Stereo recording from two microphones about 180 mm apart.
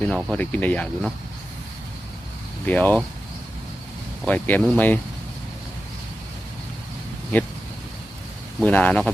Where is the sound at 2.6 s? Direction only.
10° left (ahead or behind).